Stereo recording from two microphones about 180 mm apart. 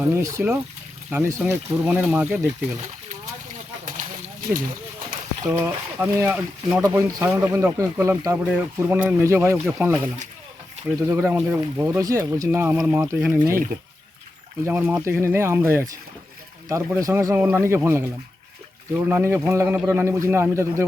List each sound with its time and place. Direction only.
0.0 s speech: 15° right (ahead or behind)
3.8 s a sound: 45° right (ahead or behind)
5.5 s speech: 10° right (ahead or behind)
11.1 s speech: 10° right (ahead or behind)
14.6 s speech: 10° right (ahead or behind)